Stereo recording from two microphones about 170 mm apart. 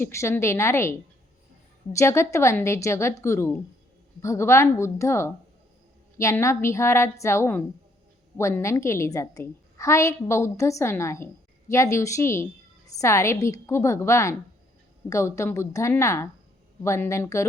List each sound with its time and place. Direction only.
0.0 s a woman's voice: 15° left (ahead or behind)